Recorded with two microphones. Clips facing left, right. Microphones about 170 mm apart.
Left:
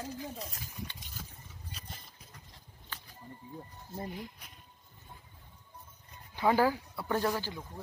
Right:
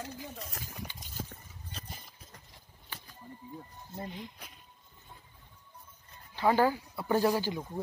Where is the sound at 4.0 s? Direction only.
5° left (ahead or behind).